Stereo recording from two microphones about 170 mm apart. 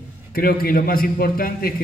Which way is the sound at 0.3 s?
60° left (ahead or behind).